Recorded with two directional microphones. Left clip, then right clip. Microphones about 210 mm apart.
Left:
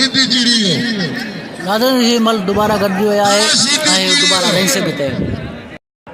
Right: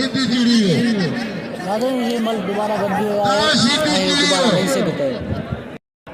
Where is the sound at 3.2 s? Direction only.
30° left (ahead or behind).